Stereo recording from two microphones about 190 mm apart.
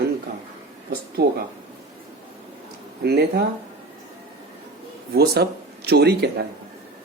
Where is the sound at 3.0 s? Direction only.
55° right (ahead or behind).